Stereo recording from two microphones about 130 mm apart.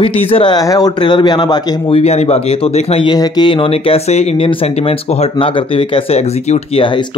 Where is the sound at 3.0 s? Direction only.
35° left (ahead or behind).